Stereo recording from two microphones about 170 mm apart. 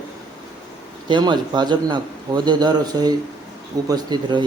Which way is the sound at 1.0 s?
25° right (ahead or behind).